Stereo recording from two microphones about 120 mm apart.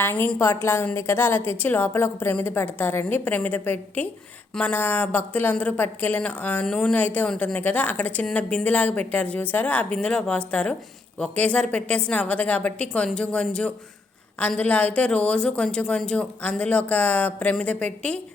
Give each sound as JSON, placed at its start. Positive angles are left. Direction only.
{"t": 0.0, "sound": "a woman's voice", "side_deg": 15}